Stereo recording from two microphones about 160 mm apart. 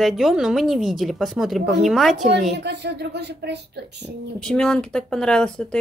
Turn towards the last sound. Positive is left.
turn(degrees=5)  # may be behind; listen again after turning